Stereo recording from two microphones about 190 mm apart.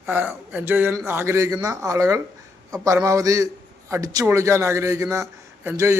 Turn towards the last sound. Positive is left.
turn(degrees=-15)  # may be behind; listen again after turning